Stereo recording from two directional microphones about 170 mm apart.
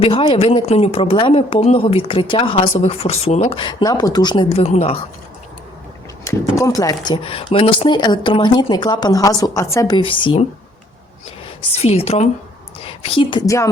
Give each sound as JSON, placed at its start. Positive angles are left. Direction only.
{"t": 0.0, "sound": "speech", "side_deg": 30}
{"t": 6.2, "sound": "speech", "side_deg": 20}
{"t": 11.8, "sound": "a woman's voice", "side_deg": 35}